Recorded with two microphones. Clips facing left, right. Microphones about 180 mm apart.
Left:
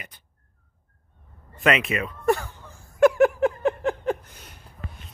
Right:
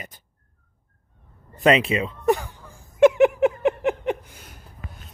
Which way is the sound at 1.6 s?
35° right (ahead or behind).